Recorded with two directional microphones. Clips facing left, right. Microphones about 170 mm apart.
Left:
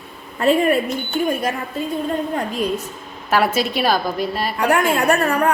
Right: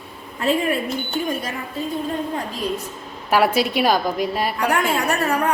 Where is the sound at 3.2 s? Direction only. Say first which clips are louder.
Right 1 dB; 10° right (ahead or behind).